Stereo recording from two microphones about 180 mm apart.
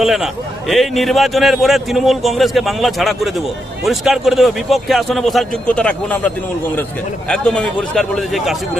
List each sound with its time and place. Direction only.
0.0 s a man's voice: centre (ahead or behind)